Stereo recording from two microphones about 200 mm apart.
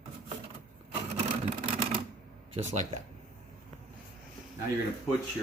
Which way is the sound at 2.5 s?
30° right (ahead or behind).